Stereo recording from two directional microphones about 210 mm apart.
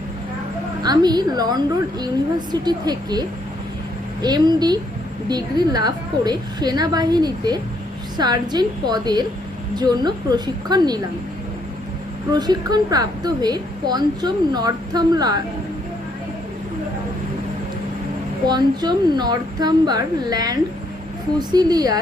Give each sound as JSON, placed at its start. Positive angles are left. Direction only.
{"t": 0.8, "sound": "a woman's voice", "side_deg": -20}
{"t": 12.3, "sound": "a woman's voice", "side_deg": -20}
{"t": 18.4, "sound": "a woman's voice", "side_deg": -20}